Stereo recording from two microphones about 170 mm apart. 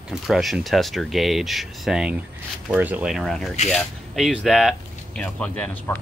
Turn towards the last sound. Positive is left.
turn(degrees=10)  # may be behind; listen again after turning